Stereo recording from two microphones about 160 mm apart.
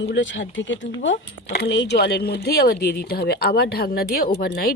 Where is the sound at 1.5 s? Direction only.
90° left.